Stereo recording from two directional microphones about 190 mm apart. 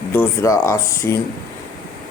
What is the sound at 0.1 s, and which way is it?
Speech, 15° left (ahead or behind).